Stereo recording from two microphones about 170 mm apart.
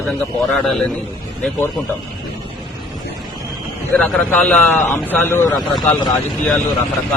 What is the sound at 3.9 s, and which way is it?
A man's voice, 5° left (ahead or behind).